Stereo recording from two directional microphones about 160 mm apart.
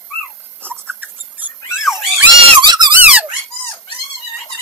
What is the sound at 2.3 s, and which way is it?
Squeak, 25° right (ahead or behind).